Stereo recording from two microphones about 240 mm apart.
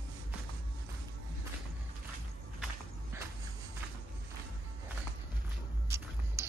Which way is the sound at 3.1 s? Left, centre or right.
Centre.